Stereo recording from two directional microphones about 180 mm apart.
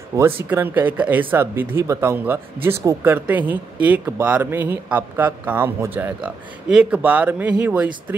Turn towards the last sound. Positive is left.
turn(degrees=-10)  # may be behind; listen again after turning